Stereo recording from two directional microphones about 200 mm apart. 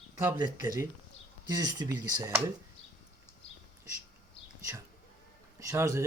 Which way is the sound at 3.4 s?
30° left (ahead or behind).